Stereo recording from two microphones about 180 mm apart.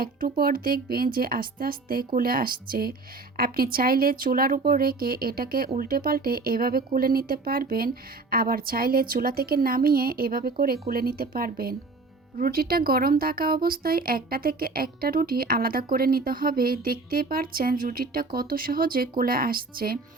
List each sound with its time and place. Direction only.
0.0 s speech: 55° right (ahead or behind)